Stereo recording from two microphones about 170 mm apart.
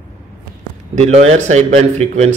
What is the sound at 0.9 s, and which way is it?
Speech, 40° right (ahead or behind).